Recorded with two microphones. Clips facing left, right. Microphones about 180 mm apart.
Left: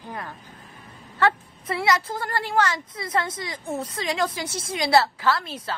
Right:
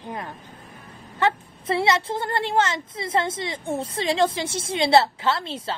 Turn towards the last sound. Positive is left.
turn(degrees=-25)  # may be behind; listen again after turning